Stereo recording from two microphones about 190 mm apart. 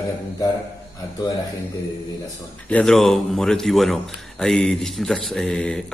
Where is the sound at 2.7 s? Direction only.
5° left (ahead or behind).